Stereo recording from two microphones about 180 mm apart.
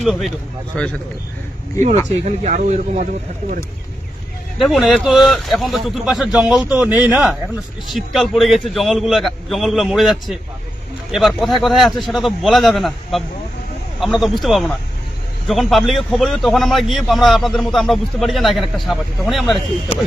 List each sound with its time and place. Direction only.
0.0 s a man's voice: centre (ahead or behind)
2.2 s speech: 40° right (ahead or behind)
4.5 s a man's voice: centre (ahead or behind)